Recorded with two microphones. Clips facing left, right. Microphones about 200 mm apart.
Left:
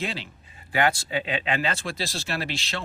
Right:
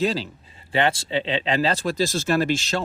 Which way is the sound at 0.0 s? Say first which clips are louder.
Right 9 dB; 40° right (ahead or behind).